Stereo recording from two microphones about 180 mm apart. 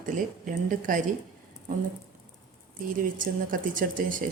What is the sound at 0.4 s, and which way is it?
Speech, 45° right (ahead or behind).